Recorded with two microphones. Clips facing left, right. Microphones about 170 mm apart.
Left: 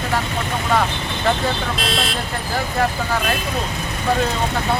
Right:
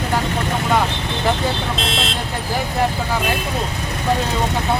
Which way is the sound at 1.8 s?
25° right (ahead or behind).